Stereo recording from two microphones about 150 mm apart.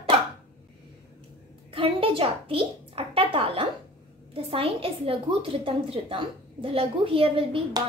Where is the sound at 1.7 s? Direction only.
35° right (ahead or behind).